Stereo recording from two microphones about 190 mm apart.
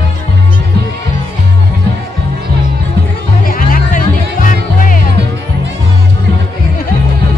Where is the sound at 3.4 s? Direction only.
45° left (ahead or behind).